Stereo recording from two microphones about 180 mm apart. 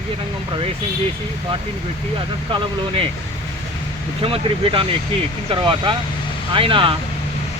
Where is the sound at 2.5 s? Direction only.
30° right (ahead or behind).